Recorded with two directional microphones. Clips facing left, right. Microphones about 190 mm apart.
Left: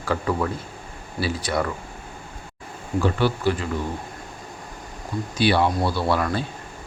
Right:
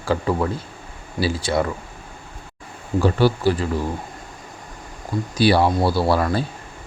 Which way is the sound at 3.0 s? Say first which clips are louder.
Right 4 dB; 35° right (ahead or behind).